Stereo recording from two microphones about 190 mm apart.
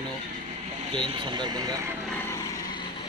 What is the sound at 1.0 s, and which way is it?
Speech, 25° right (ahead or behind).